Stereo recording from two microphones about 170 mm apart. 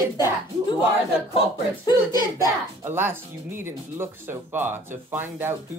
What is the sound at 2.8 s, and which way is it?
Speech, 15° right (ahead or behind).